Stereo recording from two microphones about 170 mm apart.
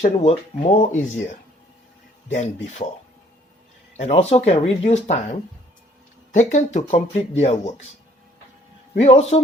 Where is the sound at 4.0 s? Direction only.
40° left (ahead or behind).